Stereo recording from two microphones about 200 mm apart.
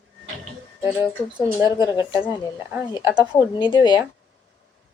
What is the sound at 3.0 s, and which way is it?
Speech, 5° right (ahead or behind).